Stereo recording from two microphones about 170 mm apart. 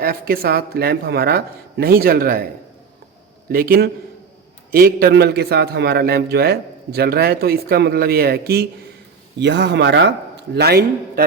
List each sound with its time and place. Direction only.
0.0 s a man's voice: 60° right (ahead or behind)
3.5 s a man's voice: 60° right (ahead or behind)
9.4 s a man's voice: 90° right; by 11.2 s 70° right (ahead or behind)